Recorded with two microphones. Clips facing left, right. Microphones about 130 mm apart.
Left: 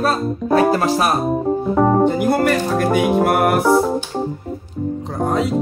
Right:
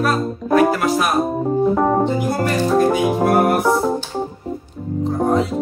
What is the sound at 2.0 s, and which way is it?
Speech, 55° left (ahead or behind).